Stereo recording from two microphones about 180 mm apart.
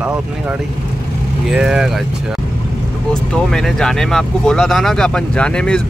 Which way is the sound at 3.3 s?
5° left (ahead or behind).